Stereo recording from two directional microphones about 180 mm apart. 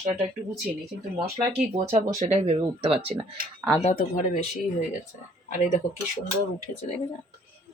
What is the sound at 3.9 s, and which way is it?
Speech, 50° left (ahead or behind).